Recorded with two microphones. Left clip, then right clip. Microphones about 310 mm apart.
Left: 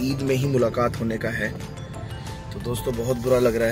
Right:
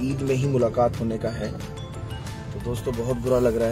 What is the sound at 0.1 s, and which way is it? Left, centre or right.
Speech, centre.